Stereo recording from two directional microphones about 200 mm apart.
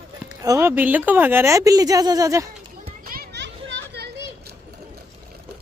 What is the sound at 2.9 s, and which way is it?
Children playing, 50° right (ahead or behind).